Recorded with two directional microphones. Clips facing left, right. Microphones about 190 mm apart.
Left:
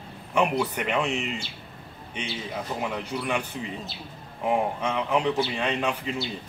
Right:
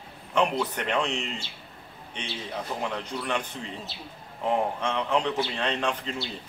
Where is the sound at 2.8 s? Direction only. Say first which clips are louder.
Left 3 dB; 5° left (ahead or behind).